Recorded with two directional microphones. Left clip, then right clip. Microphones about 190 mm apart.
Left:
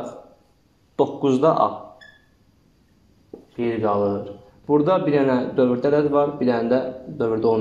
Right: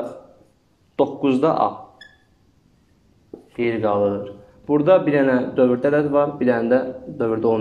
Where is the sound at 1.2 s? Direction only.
Centre (ahead or behind).